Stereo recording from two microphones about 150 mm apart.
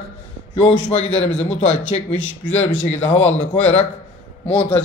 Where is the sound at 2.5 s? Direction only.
10° left (ahead or behind).